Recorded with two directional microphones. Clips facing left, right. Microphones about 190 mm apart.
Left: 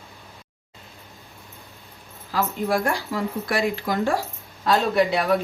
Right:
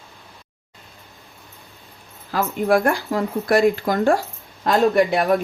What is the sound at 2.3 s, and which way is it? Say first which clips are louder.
Speech: right 5 dB; 55° right (ahead or behind).